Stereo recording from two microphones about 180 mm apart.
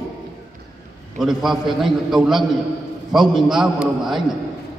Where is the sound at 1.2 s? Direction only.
Centre (ahead or behind).